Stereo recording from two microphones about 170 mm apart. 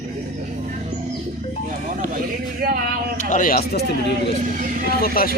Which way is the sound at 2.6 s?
60° right (ahead or behind).